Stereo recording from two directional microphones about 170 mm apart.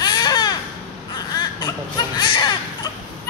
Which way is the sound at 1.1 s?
25° left (ahead or behind).